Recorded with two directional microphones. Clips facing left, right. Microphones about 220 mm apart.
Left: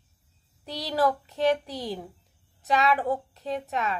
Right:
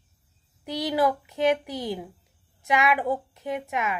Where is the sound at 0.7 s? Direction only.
15° right (ahead or behind).